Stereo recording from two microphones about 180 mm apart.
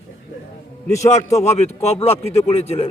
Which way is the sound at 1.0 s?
35° left (ahead or behind).